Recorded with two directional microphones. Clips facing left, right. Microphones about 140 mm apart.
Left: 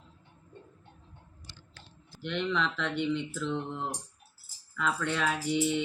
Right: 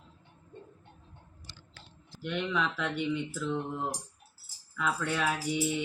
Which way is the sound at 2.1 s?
5° right (ahead or behind).